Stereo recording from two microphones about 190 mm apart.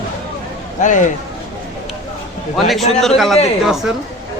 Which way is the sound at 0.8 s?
40° left (ahead or behind).